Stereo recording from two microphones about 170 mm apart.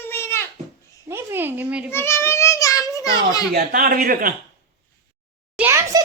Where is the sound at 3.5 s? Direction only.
60° right (ahead or behind).